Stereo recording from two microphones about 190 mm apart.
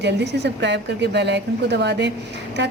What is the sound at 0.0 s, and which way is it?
A woman's voice, 65° right (ahead or behind).